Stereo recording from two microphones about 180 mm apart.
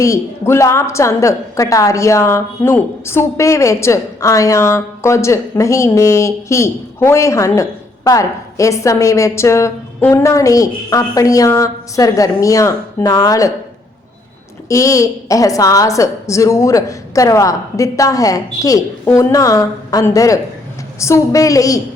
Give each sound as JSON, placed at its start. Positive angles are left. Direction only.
{"t": 0.0, "sound": "a woman's voice", "side_deg": 15}
{"t": 14.7, "sound": "a woman's voice", "side_deg": 15}